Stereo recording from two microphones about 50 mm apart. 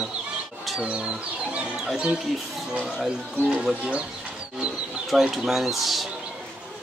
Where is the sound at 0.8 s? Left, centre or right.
Right.